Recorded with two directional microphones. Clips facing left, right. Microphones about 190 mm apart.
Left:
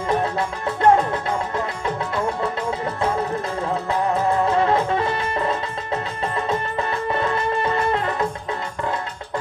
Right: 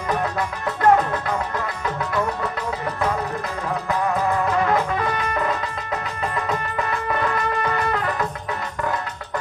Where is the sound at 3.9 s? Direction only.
30° left (ahead or behind).